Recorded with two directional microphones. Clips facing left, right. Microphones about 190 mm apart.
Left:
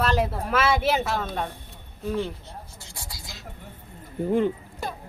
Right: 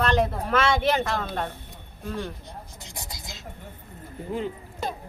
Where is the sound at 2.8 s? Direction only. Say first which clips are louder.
Right 2 dB; 20° right (ahead or behind).